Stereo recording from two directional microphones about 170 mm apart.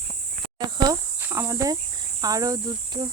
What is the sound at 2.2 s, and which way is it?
Speech, 20° right (ahead or behind).